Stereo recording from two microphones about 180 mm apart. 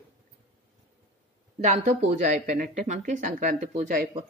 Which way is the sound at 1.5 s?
40° right (ahead or behind).